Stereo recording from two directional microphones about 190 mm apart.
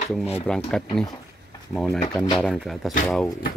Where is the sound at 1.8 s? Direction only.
20° left (ahead or behind).